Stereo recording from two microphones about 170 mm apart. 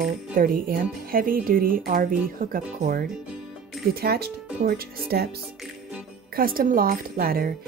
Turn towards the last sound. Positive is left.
turn(degrees=-60)  # may be behind; listen again after turning